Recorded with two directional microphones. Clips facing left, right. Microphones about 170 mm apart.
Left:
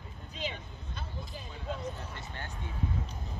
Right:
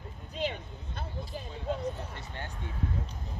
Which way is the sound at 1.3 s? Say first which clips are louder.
Right 5 dB; 50° right (ahead or behind).